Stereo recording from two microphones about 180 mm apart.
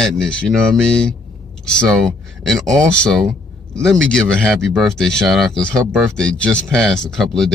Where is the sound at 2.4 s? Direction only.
Centre (ahead or behind).